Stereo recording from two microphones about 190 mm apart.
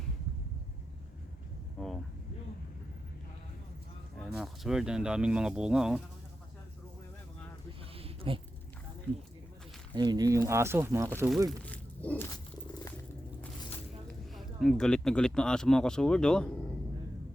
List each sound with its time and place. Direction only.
1.8 s vehicle: centre (ahead or behind)
4.2 s speech: centre (ahead or behind)
7.9 s a sound: 30° right (ahead or behind)
9.9 s speech: 20° right (ahead or behind)
11.4 s speech: 5° left (ahead or behind)
14.1 s speech: centre (ahead or behind)